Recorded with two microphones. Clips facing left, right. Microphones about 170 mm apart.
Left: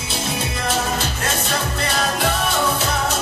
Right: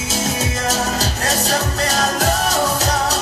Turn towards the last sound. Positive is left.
turn(degrees=-40)  # may be behind; listen again after turning